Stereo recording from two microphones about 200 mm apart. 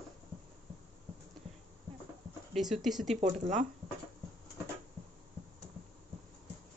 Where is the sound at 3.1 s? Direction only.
35° right (ahead or behind).